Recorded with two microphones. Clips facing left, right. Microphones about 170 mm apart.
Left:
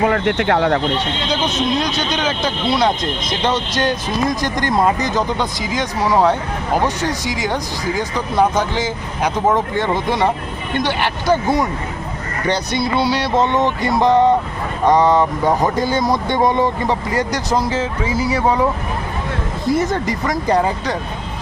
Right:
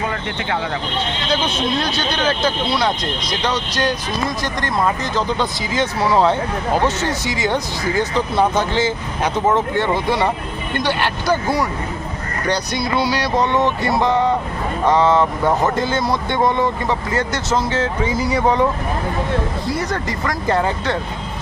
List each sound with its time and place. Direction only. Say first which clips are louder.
0.0 s speech: left 8 dB; 65° left (ahead or behind)
1.3 s speech: left 1 dB; 15° left (ahead or behind)
10.8 s music: left 1 dB; 20° left (ahead or behind)
14.8 s speech: left 2 dB; 15° left (ahead or behind)
19.7 s speech: left 4 dB; 20° left (ahead or behind)